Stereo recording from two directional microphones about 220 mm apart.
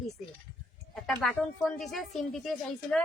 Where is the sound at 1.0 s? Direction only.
5° left (ahead or behind).